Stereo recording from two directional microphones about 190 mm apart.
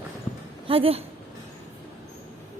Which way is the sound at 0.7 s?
30° right (ahead or behind).